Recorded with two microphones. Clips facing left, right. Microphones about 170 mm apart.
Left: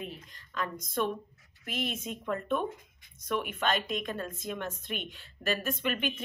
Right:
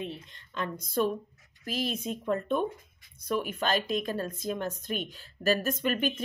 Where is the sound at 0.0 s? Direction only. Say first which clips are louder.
Right 4 dB; 25° right (ahead or behind).